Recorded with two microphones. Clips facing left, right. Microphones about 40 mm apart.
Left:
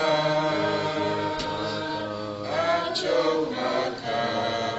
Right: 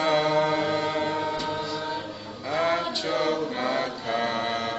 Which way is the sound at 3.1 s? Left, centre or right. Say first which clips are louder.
Left 3 dB; right.